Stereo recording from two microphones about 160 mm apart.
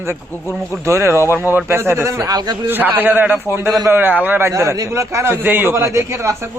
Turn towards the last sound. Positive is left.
turn(degrees=-15)  # may be behind; listen again after turning